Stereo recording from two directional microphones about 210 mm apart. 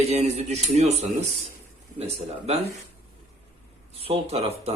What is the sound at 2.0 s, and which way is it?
Speech, 30° right (ahead or behind).